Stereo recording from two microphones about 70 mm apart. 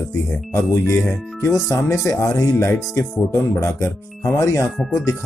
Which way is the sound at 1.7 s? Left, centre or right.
Left.